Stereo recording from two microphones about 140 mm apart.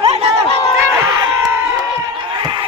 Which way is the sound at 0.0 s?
50° right (ahead or behind).